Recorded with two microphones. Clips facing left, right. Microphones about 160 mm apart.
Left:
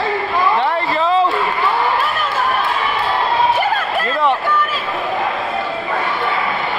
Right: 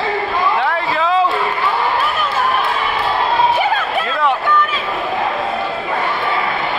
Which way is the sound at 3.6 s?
Centre (ahead or behind).